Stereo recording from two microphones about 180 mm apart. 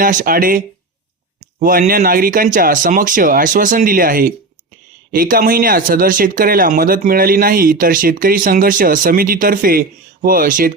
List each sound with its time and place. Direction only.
0.0 s speech: 50° right (ahead or behind)